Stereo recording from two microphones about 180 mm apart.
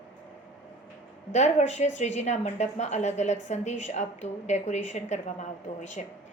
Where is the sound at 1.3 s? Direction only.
40° left (ahead or behind).